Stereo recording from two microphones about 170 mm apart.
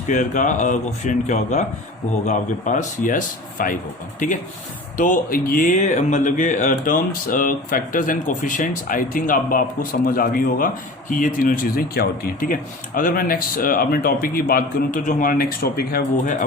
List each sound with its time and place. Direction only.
0.1 s speech: 45° left (ahead or behind)
4.9 s speech: 55° left (ahead or behind)